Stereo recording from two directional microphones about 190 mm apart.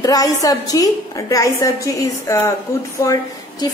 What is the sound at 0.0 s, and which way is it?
A woman's voice, 20° left (ahead or behind).